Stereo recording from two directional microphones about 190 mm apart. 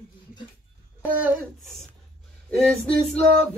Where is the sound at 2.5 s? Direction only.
Centre (ahead or behind).